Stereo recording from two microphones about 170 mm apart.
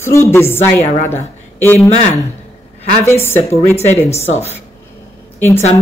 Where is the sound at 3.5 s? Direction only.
40° left (ahead or behind).